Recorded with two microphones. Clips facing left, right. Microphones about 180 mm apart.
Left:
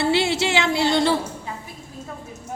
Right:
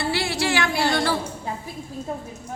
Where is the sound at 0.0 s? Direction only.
25° left (ahead or behind).